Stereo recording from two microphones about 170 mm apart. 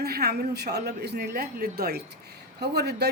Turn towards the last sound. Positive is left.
turn(degrees=-70)  # may be behind; listen again after turning